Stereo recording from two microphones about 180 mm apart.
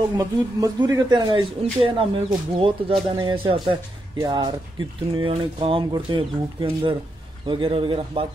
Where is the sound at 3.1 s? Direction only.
25° right (ahead or behind).